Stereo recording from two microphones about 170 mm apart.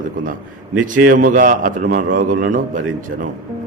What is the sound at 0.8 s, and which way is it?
A man's voice, 50° right (ahead or behind).